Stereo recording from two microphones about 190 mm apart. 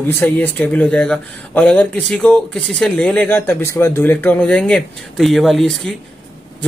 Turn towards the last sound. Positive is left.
turn(degrees=0)  # may be behind; listen again after turning